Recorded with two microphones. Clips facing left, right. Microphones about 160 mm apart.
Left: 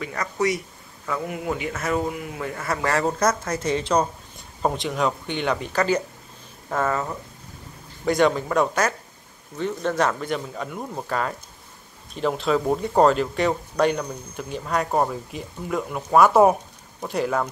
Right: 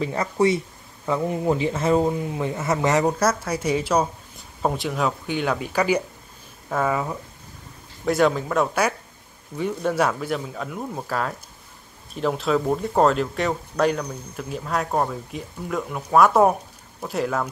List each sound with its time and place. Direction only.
0.0 s speech: 30° right (ahead or behind); by 17.5 s centre (ahead or behind)